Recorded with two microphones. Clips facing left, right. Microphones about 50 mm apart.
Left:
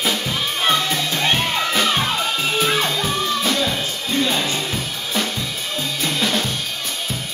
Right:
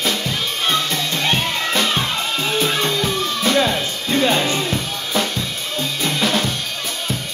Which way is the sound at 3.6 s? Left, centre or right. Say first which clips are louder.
Right 3 dB; right.